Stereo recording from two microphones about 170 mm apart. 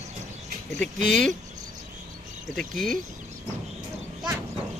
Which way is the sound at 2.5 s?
5° left (ahead or behind).